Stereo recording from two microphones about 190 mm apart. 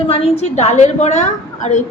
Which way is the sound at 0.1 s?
35° left (ahead or behind).